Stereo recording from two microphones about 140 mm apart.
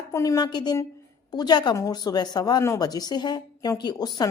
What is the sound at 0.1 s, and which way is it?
A woman's voice, 25° left (ahead or behind).